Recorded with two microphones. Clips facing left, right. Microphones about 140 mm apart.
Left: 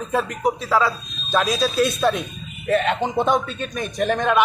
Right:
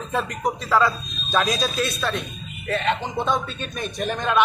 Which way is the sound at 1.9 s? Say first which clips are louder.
Left 7 dB; 15° left (ahead or behind).